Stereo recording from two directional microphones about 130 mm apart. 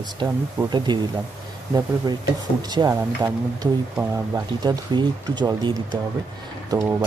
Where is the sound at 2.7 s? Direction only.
30° right (ahead or behind).